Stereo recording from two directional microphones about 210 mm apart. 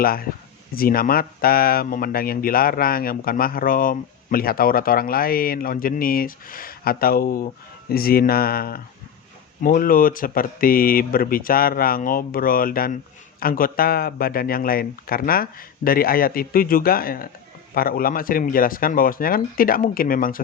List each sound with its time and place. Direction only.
0.0 s speech: 45° left (ahead or behind)